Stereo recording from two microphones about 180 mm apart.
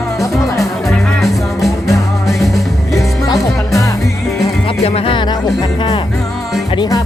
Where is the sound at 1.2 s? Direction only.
Centre (ahead or behind).